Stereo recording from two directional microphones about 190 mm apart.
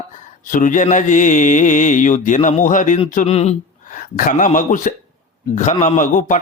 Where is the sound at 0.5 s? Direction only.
40° left (ahead or behind).